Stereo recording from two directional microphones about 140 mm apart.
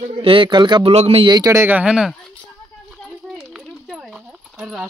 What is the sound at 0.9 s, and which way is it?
Speech, 45° right (ahead or behind).